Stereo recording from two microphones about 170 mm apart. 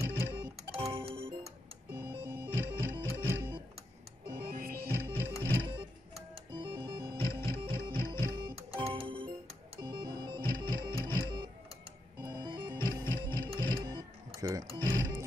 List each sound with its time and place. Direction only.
0.0 s music: 15° right (ahead or behind)
0.7 s music: 35° right (ahead or behind)
1.9 s music: 15° right (ahead or behind)
4.5 s music: 55° right (ahead or behind)
4.8 s music: 15° right (ahead or behind)
6.3 s music: 30° right (ahead or behind)